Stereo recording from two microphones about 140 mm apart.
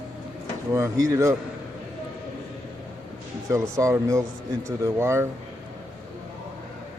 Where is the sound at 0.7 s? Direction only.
20° right (ahead or behind).